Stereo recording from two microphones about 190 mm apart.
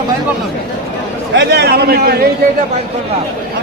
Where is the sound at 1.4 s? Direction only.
65° right (ahead or behind).